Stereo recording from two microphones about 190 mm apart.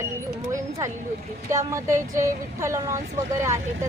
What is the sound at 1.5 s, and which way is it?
Speech, 15° right (ahead or behind).